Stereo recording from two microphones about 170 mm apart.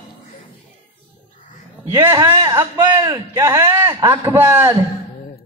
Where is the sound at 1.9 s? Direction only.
25° right (ahead or behind).